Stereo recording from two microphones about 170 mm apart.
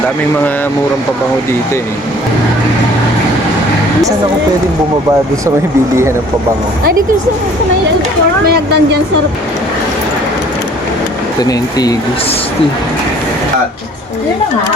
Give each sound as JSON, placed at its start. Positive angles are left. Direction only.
{"t": 8.4, "sound": "speech", "side_deg": -70}
{"t": 11.3, "sound": "speech", "side_deg": 20}